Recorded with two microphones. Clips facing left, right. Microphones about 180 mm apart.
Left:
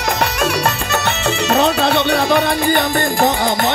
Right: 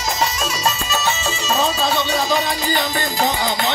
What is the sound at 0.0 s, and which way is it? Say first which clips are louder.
Music: left 4 dB; 60° left (ahead or behind).